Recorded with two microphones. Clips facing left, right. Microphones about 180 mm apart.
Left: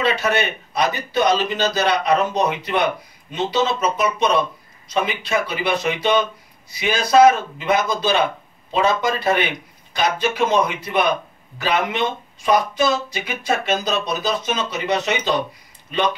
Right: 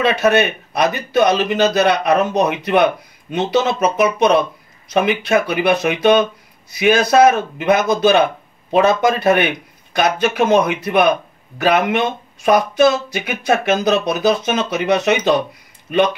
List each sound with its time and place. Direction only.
0.0 s speech: 55° right (ahead or behind)